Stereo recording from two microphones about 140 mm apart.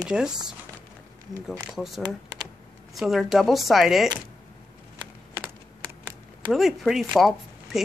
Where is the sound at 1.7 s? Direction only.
Centre (ahead or behind).